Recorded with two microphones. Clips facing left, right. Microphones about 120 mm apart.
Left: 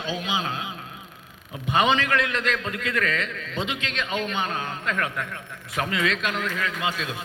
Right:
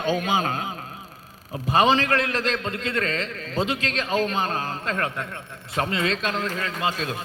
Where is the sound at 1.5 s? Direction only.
35° right (ahead or behind).